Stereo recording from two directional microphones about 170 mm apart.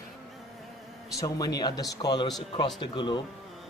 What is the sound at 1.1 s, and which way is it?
A man's voice, 20° left (ahead or behind).